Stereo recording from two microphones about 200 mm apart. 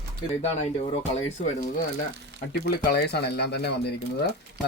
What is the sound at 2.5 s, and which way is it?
Speech, 55° left (ahead or behind).